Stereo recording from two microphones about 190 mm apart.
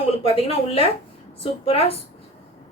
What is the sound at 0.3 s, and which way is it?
Speech, 30° left (ahead or behind).